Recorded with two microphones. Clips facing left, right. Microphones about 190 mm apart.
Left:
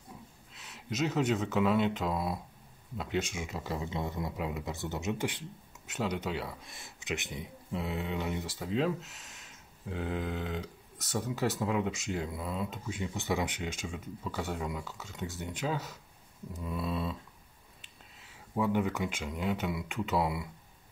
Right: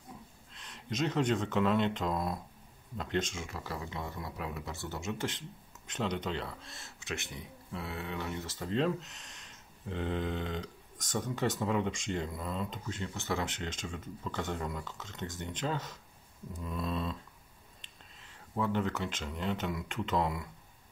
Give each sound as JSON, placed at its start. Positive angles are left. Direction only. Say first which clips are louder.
{"t": 0.5, "sound": "speech", "louder": "even", "side_deg": 5}